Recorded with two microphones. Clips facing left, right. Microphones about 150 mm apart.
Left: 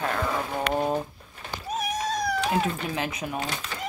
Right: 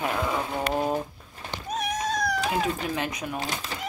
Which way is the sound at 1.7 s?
5° left (ahead or behind).